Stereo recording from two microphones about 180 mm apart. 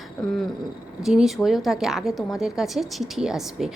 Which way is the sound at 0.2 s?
Centre (ahead or behind).